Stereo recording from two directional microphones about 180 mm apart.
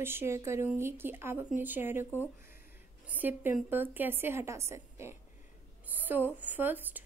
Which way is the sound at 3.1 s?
10° right (ahead or behind).